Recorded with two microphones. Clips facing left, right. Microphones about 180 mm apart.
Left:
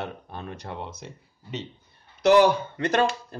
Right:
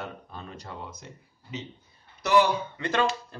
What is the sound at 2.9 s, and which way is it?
Speech, 45° left (ahead or behind).